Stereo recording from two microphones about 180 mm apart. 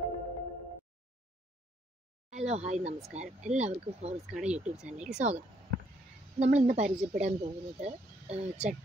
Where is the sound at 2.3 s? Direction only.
40° right (ahead or behind).